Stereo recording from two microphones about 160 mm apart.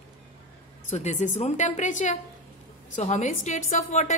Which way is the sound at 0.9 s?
45° left (ahead or behind).